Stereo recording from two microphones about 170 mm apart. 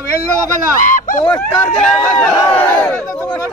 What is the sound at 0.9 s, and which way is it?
Speech, 50° left (ahead or behind).